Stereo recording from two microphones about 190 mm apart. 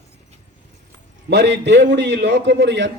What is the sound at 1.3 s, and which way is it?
A man's voice, 65° right (ahead or behind).